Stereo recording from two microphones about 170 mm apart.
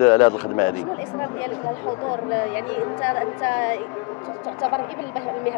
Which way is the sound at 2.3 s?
15° left (ahead or behind).